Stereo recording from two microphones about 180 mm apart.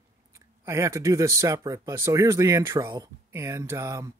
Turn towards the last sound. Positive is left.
turn(degrees=-15)  # may be behind; listen again after turning